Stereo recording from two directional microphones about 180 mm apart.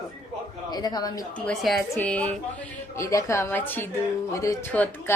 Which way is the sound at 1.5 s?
Centre (ahead or behind).